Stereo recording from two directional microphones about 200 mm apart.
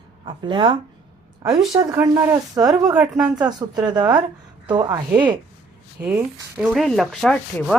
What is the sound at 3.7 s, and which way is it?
A woman's voice, 20° right (ahead or behind).